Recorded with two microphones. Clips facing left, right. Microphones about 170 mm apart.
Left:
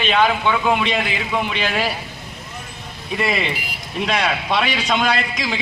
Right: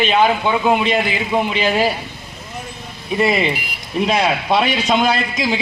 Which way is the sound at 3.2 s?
35° right (ahead or behind).